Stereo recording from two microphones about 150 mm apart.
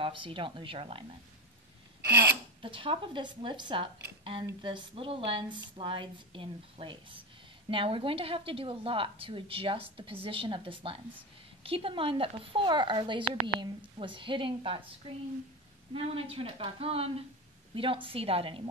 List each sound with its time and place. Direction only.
0.0 s a woman's voice: 35° right (ahead or behind)
2.0 s a sound: 15° right (ahead or behind)
2.6 s a woman's voice: 35° right (ahead or behind)
15.9 s a woman's voice: 40° right (ahead or behind)